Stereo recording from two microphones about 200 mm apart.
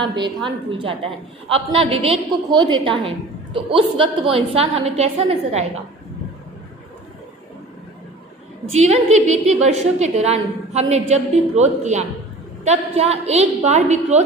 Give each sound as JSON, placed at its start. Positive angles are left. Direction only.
{"t": 0.0, "sound": "a woman's voice", "side_deg": -25}
{"t": 8.7, "sound": "a woman's voice", "side_deg": -35}